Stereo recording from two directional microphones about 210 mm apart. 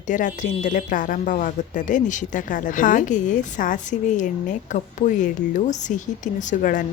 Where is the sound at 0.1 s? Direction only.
35° left (ahead or behind).